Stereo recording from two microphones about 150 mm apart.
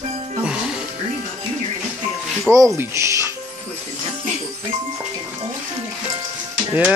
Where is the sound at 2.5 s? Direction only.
20° right (ahead or behind).